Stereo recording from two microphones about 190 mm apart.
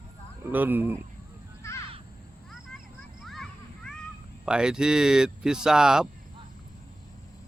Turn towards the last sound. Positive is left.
turn(degrees=-5)  # may be behind; listen again after turning